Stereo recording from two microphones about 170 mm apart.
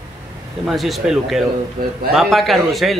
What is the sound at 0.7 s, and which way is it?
Speech, centre (ahead or behind).